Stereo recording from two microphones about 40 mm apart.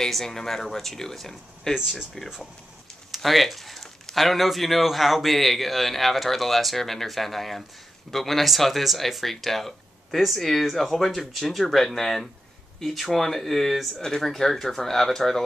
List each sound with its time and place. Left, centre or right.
0.1 s speech: centre
1.8 s speech: centre
3.1 s speech: centre